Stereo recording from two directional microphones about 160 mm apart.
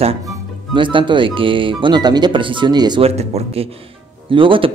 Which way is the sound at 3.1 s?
40° right (ahead or behind).